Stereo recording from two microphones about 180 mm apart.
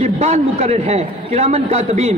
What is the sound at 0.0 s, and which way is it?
A man's voice, 35° right (ahead or behind).